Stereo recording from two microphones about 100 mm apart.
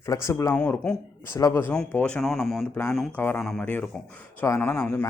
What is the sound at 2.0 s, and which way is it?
Speech, 10° left (ahead or behind).